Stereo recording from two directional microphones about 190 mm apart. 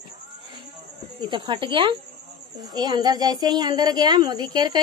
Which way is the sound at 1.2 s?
25° right (ahead or behind).